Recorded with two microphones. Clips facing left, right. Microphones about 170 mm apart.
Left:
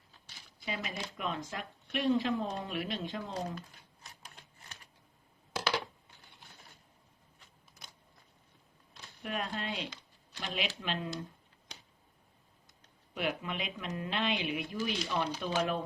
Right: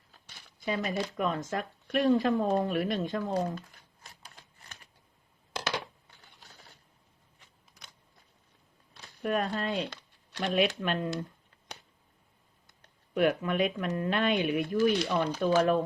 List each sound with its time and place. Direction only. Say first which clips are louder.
0.6 s speech: right 8 dB; 45° right (ahead or behind)
9.2 s speech: right 7 dB; 45° right (ahead or behind)
9.9 s speech: right 7 dB; 65° right (ahead or behind)
12.6 s speech: even; 55° right (ahead or behind)